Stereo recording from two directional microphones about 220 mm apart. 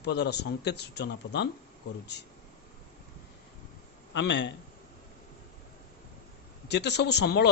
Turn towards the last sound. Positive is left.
turn(degrees=50)  # may be behind; listen again after turning